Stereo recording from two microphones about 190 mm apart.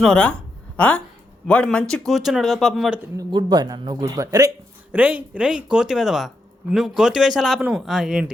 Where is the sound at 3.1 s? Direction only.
20° right (ahead or behind).